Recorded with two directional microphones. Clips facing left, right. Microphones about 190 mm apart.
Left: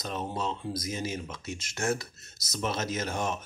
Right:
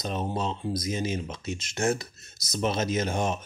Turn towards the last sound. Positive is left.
turn(degrees=-20)  # may be behind; listen again after turning